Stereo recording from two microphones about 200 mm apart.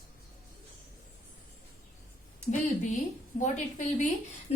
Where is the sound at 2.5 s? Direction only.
40° left (ahead or behind).